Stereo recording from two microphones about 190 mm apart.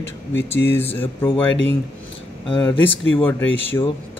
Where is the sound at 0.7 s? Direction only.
10° left (ahead or behind).